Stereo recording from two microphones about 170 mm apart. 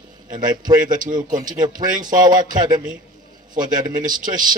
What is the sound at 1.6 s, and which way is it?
A man's voice, 25° right (ahead or behind).